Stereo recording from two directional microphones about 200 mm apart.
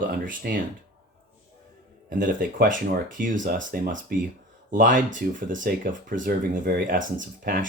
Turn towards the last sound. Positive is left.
turn(degrees=-45)  # may be behind; listen again after turning